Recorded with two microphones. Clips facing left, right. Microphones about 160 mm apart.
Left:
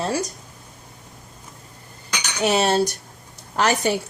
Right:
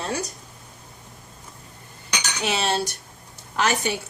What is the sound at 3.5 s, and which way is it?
Speech, 40° left (ahead or behind).